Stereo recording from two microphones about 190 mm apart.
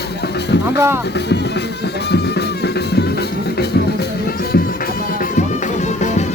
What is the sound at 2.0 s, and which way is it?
Music, 60° left (ahead or behind).